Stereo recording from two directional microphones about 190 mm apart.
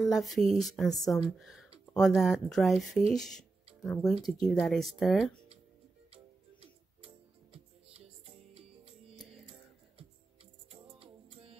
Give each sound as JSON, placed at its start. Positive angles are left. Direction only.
{"t": 0.0, "sound": "speech", "side_deg": 0}
{"t": 6.0, "sound": "music", "side_deg": -30}
{"t": 10.7, "sound": "music", "side_deg": -30}